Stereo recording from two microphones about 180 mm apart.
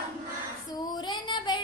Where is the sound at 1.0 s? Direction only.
25° left (ahead or behind).